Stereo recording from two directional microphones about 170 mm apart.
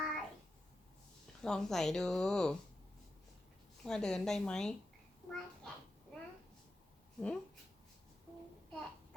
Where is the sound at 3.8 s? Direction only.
5° left (ahead or behind).